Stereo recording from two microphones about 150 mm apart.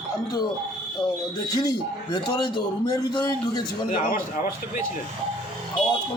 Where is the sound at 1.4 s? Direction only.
25° left (ahead or behind).